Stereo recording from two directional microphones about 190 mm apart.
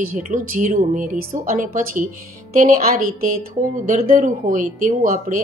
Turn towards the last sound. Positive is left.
turn(degrees=-45)  # may be behind; listen again after turning